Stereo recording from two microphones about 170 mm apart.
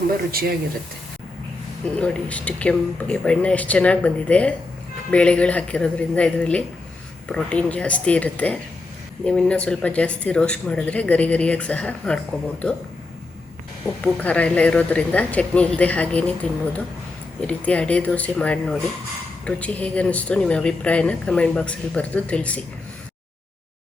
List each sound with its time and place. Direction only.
0.3 s speech: 60° right (ahead or behind)
1.8 s speech: 5° left (ahead or behind)
14.0 s speech: 10° left (ahead or behind)